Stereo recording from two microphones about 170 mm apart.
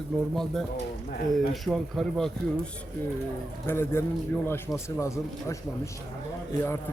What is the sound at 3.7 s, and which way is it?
Speech, 15° left (ahead or behind).